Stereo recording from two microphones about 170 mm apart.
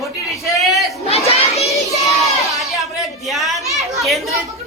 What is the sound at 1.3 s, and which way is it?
Children playing, 35° left (ahead or behind).